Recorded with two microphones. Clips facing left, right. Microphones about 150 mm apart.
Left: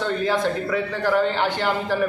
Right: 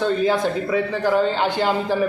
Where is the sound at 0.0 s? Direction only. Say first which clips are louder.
Right 3 dB; 15° right (ahead or behind).